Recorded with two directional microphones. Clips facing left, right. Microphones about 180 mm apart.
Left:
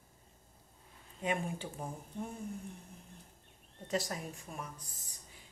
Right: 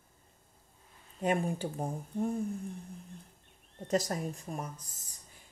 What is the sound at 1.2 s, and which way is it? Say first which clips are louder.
Speech: right 6 dB; 40° right (ahead or behind).